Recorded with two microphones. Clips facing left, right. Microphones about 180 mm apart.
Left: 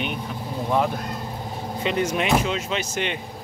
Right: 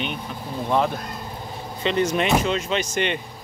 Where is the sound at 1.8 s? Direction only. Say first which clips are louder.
Right 2 dB; 5° left (ahead or behind).